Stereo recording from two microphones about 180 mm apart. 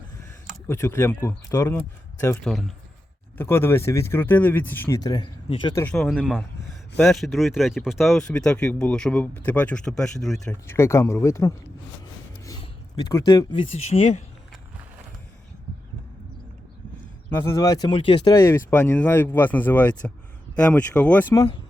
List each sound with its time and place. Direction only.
0.7 s speech: 15° left (ahead or behind)
2.4 s speech: centre (ahead or behind)
3.3 s speech: 15° left (ahead or behind)
4.9 s speech: 20° left (ahead or behind)
5.7 s speech: 10° left (ahead or behind)
6.1 s speech: centre (ahead or behind)
10.5 s speech: 15° left (ahead or behind)
13.1 s speech: 20° left (ahead or behind)
17.3 s speech: 15° left (ahead or behind); by 18.3 s 30° left (ahead or behind)
18.3 s speech: 15° left (ahead or behind)